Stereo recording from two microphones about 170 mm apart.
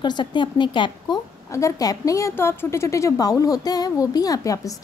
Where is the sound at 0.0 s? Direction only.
25° left (ahead or behind).